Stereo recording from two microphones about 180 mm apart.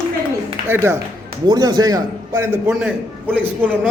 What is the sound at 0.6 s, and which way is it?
Speech, 15° right (ahead or behind).